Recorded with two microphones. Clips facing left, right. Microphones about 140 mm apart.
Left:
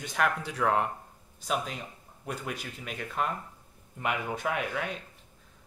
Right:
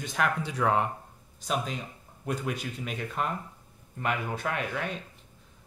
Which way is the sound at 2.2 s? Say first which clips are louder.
Right 4 dB; 5° left (ahead or behind).